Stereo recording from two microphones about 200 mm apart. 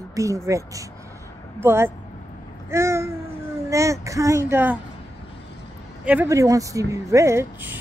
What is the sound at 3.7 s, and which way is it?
Speech, 15° right (ahead or behind).